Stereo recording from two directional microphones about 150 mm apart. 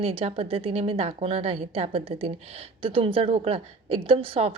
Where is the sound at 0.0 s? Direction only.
40° right (ahead or behind).